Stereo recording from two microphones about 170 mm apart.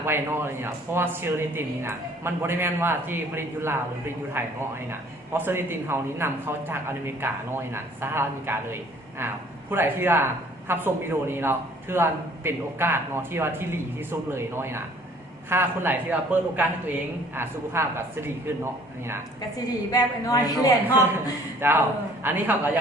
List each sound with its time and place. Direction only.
0.0 s a man's voice: 15° right (ahead or behind)
19.9 s a man's voice: 20° left (ahead or behind)
21.6 s a man's voice: 10° right (ahead or behind)